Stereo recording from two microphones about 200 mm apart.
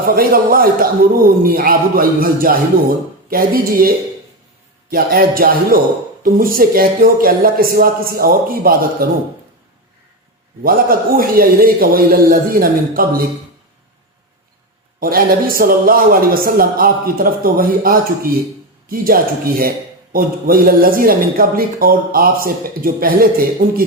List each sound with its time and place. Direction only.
0.1 s a man's voice: 45° right (ahead or behind)
10.6 s a man's voice: 45° right (ahead or behind)
15.0 s a man's voice: 45° right (ahead or behind)